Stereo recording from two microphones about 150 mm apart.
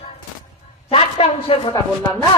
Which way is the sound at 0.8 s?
40° left (ahead or behind).